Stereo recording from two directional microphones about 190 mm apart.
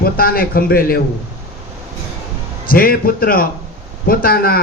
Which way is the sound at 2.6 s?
50° left (ahead or behind).